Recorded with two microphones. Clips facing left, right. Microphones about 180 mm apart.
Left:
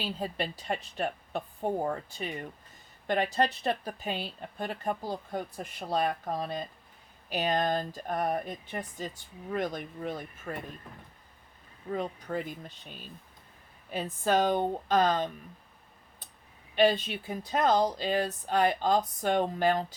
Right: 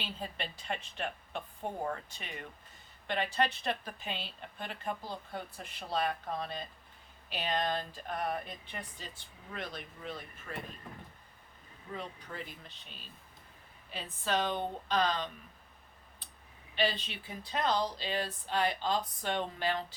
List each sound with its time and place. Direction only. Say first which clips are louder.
0.0 s a woman's voice: left 7 dB; 40° left (ahead or behind)
11.9 s speech: left 9 dB; 45° left (ahead or behind)
16.7 s speech: left 9 dB; 45° left (ahead or behind)